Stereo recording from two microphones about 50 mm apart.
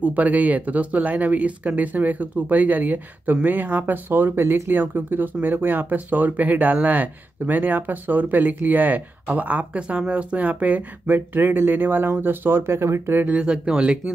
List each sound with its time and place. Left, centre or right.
0.0 s speech: right
13.4 s speech: centre